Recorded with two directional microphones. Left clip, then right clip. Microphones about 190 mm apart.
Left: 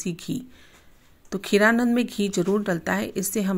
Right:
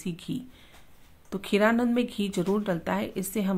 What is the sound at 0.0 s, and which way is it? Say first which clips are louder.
Speech: left 4 dB; 15° left (ahead or behind).